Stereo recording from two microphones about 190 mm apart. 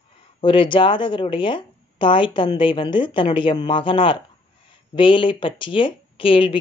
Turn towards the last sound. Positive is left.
turn(degrees=30)  # may be behind; listen again after turning